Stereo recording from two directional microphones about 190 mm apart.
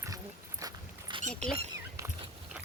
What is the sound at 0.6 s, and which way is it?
Dog, 20° right (ahead or behind).